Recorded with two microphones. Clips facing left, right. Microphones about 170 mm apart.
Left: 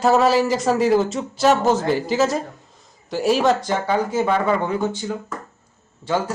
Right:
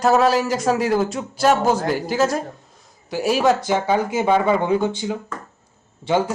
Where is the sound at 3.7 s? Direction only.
15° right (ahead or behind).